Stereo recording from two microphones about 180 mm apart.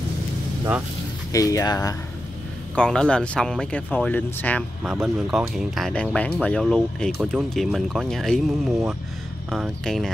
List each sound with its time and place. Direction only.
1.3 s speech: 20° left (ahead or behind)
2.7 s speech: 5° left (ahead or behind)
4.8 s speech: centre (ahead or behind)